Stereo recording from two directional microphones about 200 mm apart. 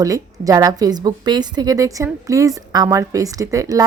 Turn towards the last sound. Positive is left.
turn(degrees=-15)  # may be behind; listen again after turning